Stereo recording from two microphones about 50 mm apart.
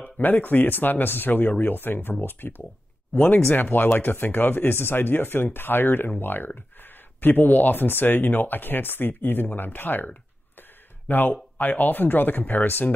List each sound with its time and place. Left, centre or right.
0.0 s speech: left